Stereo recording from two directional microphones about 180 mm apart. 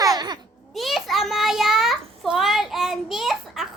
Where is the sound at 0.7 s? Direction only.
Centre (ahead or behind).